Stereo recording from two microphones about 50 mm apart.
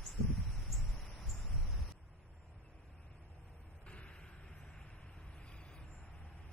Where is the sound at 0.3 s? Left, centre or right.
Centre.